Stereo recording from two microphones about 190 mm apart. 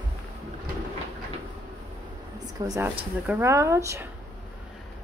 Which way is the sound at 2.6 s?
20° right (ahead or behind).